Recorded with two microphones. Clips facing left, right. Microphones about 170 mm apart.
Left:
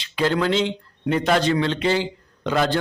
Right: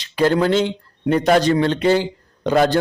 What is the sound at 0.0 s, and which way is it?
A man's voice, 45° right (ahead or behind).